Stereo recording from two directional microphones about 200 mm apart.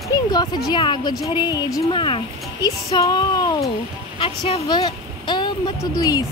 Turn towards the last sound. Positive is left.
turn(degrees=20)  # may be behind; listen again after turning